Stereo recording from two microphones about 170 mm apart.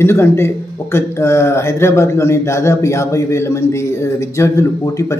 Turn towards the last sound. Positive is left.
turn(degrees=15)  # may be behind; listen again after turning